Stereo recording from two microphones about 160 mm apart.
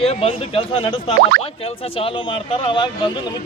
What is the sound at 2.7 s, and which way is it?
Speech, 30° left (ahead or behind).